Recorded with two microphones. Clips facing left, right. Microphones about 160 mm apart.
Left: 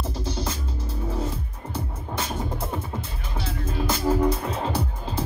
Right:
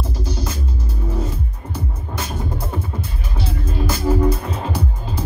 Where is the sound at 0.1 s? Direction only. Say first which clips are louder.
Right 3 dB; 25° left (ahead or behind).